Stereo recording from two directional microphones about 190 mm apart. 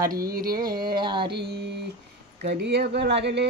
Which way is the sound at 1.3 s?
60° right (ahead or behind).